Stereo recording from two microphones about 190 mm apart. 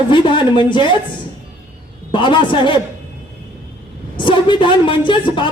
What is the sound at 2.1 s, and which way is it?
Speech, 25° left (ahead or behind).